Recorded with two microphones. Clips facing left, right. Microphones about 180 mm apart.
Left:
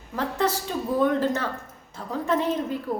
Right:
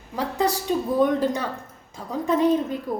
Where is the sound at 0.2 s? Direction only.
15° right (ahead or behind).